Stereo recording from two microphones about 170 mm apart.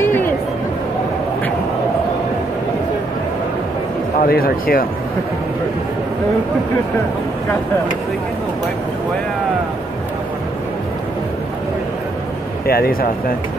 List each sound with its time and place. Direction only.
0.0 s a sound: 10° left (ahead or behind)
4.2 s speech: 60° left (ahead or behind)
12.6 s speech: 65° left (ahead or behind)